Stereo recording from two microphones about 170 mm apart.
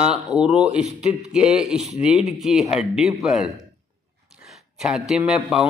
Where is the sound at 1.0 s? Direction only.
5° right (ahead or behind).